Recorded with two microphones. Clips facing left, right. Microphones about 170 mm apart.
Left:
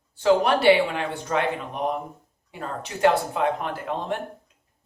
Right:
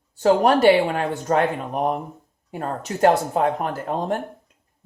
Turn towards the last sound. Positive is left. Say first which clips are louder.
# right 4 dB
turn(degrees=-45)  # may be behind; listen again after turning